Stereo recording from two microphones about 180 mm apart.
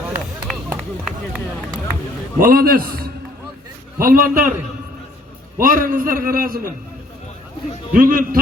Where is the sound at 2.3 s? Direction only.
50° right (ahead or behind).